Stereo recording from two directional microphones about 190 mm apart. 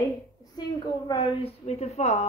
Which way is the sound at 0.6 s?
25° left (ahead or behind).